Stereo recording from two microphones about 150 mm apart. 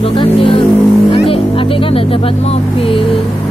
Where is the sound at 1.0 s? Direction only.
40° left (ahead or behind).